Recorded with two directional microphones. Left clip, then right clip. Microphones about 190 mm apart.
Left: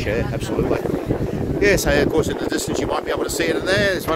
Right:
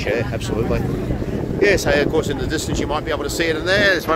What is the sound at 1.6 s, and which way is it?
Speech, 15° left (ahead or behind).